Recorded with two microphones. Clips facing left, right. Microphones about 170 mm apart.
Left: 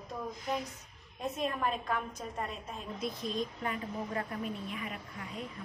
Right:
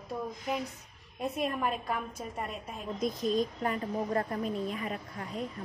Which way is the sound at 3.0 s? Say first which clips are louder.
Right 7 dB; 45° right (ahead or behind).